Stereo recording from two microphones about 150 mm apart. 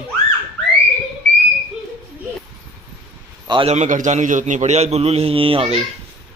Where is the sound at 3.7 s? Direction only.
55° right (ahead or behind); by 5.7 s 40° right (ahead or behind).